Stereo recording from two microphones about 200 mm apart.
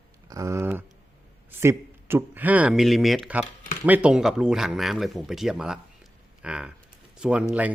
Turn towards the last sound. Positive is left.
turn(degrees=-5)  # may be behind; listen again after turning